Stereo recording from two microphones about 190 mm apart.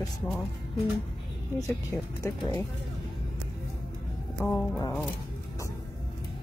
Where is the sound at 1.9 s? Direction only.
15° left (ahead or behind).